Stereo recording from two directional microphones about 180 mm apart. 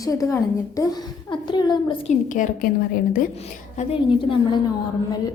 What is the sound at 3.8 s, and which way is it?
Speech, 30° left (ahead or behind).